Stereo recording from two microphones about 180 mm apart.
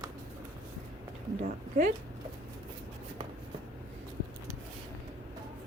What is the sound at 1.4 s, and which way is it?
Speech, 50° right (ahead or behind).